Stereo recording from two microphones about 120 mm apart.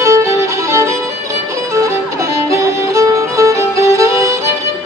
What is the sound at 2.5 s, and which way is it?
Music, 25° right (ahead or behind).